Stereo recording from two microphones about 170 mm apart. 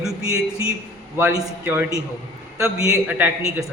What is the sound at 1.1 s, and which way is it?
A man's voice, 15° right (ahead or behind).